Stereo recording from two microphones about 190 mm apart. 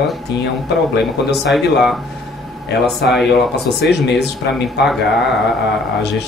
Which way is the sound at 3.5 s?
60° left (ahead or behind).